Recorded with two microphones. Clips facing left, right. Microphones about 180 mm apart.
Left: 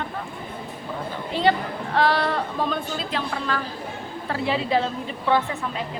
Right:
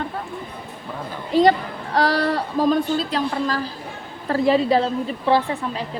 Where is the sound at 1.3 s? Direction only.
40° right (ahead or behind).